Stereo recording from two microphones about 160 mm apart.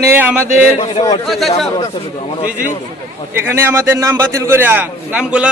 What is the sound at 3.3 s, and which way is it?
A man's voice, 15° right (ahead or behind).